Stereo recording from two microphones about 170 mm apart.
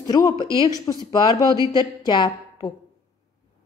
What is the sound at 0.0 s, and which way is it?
A woman's voice, 20° left (ahead or behind).